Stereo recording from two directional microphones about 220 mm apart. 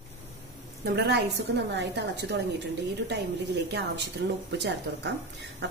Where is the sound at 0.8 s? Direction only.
50° right (ahead or behind).